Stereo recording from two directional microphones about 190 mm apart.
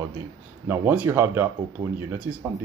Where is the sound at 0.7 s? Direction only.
10° right (ahead or behind).